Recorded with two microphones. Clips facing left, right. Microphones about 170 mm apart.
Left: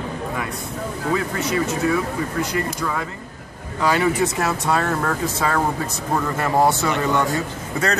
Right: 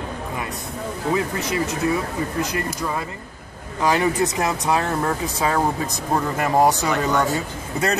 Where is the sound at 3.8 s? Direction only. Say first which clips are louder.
Even; 15° right (ahead or behind).